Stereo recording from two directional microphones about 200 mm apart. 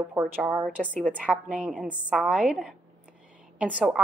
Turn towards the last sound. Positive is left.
turn(degrees=-5)  # may be behind; listen again after turning